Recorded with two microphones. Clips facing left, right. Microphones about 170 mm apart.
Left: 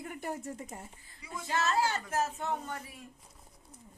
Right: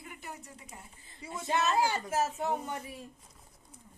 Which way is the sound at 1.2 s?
25° right (ahead or behind).